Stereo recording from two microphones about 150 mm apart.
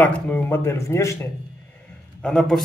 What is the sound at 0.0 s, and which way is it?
A man's voice, 10° left (ahead or behind).